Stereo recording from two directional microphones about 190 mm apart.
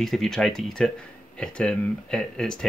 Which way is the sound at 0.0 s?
Centre (ahead or behind).